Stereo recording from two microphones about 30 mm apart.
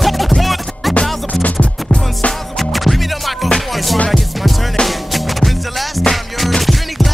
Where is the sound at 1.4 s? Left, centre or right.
Left.